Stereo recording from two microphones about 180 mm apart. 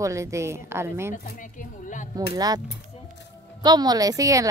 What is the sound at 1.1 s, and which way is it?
Speech, 45° left (ahead or behind).